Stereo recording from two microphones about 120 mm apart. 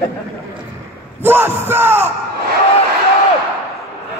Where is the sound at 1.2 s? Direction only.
20° right (ahead or behind).